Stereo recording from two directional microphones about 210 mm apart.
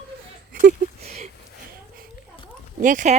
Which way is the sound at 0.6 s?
35° right (ahead or behind).